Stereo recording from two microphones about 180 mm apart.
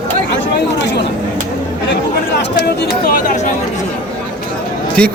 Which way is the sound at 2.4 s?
70° left (ahead or behind).